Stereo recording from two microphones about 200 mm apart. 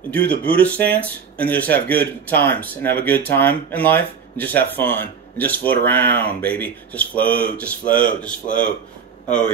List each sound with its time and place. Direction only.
0.1 s speech: 10° left (ahead or behind)
8.5 s speech: 40° left (ahead or behind)